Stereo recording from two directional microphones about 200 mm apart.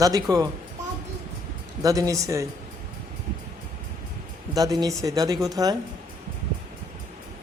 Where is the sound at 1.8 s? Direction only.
15° right (ahead or behind).